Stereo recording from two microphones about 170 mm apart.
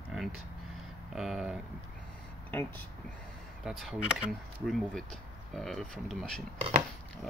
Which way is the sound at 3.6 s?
Centre (ahead or behind).